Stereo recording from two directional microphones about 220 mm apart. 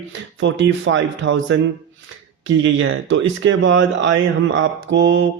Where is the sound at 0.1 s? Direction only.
55° right (ahead or behind).